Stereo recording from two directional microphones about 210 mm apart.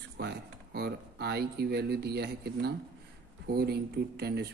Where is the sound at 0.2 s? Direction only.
50° right (ahead or behind).